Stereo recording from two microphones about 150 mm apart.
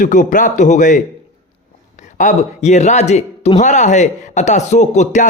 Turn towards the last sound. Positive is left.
turn(degrees=50)  # may be behind; listen again after turning